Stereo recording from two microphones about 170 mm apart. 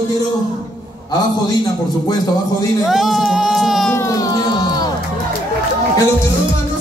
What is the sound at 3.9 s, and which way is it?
Music, 20° left (ahead or behind).